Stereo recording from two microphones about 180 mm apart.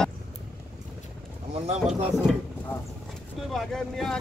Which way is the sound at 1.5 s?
35° right (ahead or behind).